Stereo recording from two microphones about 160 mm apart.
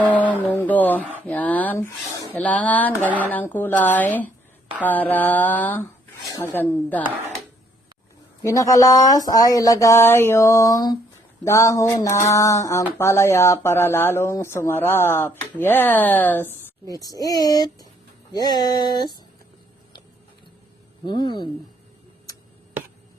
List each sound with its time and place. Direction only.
0.1 s a sound: 10° left (ahead or behind)
1.3 s speech: 10° left (ahead or behind)
8.4 s speech: 20° left (ahead or behind)
21.0 s speech: 30° left (ahead or behind)